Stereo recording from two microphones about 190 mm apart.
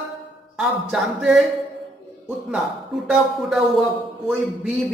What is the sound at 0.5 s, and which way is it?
Speech, centre (ahead or behind).